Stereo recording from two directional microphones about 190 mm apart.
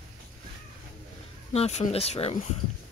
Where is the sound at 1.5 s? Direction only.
35° left (ahead or behind).